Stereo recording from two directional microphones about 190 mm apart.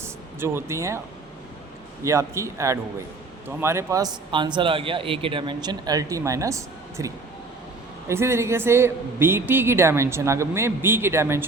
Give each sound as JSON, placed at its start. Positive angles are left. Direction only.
{"t": 0.0, "sound": "speech", "side_deg": -15}
{"t": 2.0, "sound": "speech", "side_deg": -15}